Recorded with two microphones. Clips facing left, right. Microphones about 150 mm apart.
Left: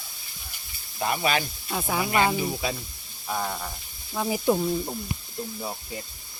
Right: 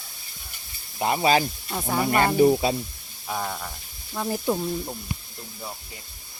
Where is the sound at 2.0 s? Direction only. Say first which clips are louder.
Right 2 dB; 45° right (ahead or behind).